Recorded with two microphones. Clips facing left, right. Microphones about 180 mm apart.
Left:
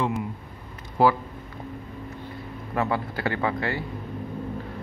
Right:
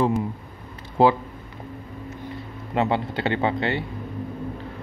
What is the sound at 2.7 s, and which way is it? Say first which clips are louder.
Speech: right 3 dB; 25° right (ahead or behind).